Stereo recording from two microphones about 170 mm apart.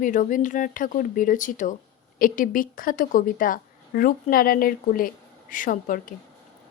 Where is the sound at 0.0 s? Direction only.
50° left (ahead or behind).